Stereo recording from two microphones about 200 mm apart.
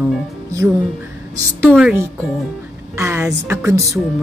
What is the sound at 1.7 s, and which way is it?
A woman's voice, 5° right (ahead or behind).